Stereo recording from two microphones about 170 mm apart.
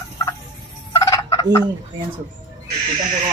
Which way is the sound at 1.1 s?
20° left (ahead or behind).